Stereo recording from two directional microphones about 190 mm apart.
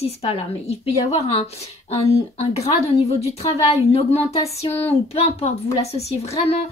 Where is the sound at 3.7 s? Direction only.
30° left (ahead or behind).